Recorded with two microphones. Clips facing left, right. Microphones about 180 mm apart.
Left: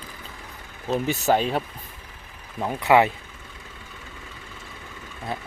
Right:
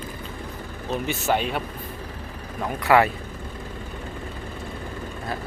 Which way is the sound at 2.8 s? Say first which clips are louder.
Even; 20° left (ahead or behind).